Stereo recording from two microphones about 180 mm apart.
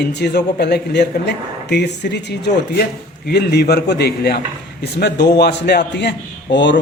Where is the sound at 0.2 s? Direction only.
70° left (ahead or behind).